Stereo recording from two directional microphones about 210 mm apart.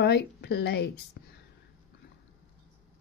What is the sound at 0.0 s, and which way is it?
Speech, 55° left (ahead or behind).